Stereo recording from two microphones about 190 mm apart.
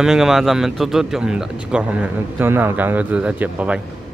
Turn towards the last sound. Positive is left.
turn(degrees=-5)  # may be behind; listen again after turning